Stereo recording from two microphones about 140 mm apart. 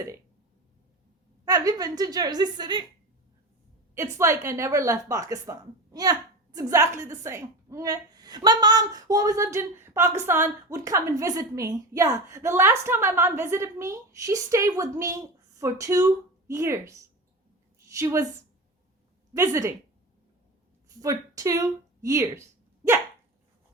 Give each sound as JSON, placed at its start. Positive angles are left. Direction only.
{"t": 1.5, "sound": "a woman's voice", "side_deg": -25}
{"t": 3.9, "sound": "a woman's voice", "side_deg": -20}
{"t": 17.9, "sound": "a woman's voice", "side_deg": -20}
{"t": 19.3, "sound": "a woman's voice", "side_deg": -20}
{"t": 21.0, "sound": "speech", "side_deg": -25}